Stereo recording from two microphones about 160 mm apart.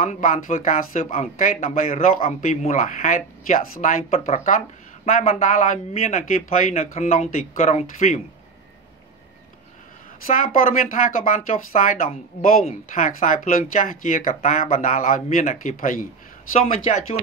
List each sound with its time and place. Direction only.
0.0 s speech: 55° left (ahead or behind)
10.2 s speech: 60° left (ahead or behind)
16.8 s speech: 40° left (ahead or behind)